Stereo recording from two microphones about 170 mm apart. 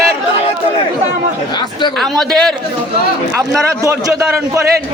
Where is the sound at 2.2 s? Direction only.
Centre (ahead or behind).